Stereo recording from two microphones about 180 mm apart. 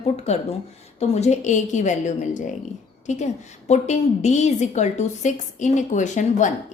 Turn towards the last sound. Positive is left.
turn(degrees=40)  # may be behind; listen again after turning